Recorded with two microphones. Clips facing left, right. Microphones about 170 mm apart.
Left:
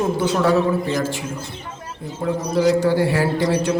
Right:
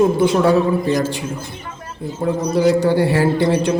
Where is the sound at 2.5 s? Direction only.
25° right (ahead or behind).